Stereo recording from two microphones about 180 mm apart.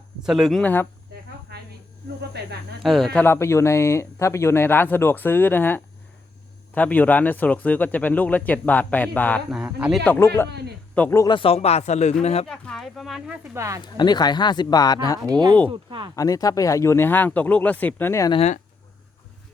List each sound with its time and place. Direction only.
0.3 s speech: centre (ahead or behind)
2.8 s speech: centre (ahead or behind)
9.5 s speech: 5° right (ahead or behind)
10.2 s speech: 15° left (ahead or behind)
11.3 s speech: 30° left (ahead or behind)
12.5 s speech: centre (ahead or behind)
13.6 s speech: 15° right (ahead or behind)
13.8 s speech: 25° left (ahead or behind)
15.3 s speech: 25° right (ahead or behind)
16.1 s speech: 20° left (ahead or behind)
18.3 s speech: 40° left (ahead or behind)